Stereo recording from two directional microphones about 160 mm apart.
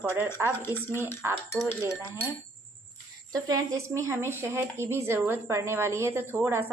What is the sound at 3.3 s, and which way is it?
Speech, 20° right (ahead or behind).